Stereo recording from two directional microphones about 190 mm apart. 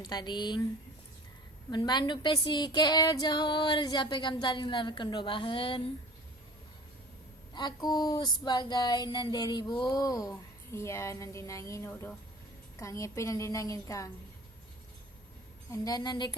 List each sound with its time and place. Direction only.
0.0 s child singing: 20° left (ahead or behind)
1.7 s child singing: 25° left (ahead or behind)
7.5 s child singing: 20° left (ahead or behind)
12.8 s a woman's voice: 15° left (ahead or behind)
15.7 s child singing: 20° left (ahead or behind)